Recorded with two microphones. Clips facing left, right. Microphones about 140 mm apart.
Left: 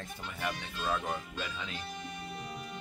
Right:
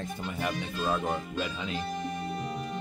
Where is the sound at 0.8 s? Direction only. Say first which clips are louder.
Right 5 dB; 40° right (ahead or behind).